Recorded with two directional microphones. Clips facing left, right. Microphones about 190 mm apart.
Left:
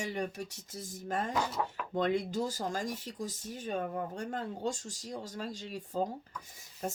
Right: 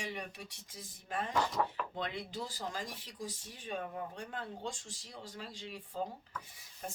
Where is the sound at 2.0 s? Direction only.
45° left (ahead or behind).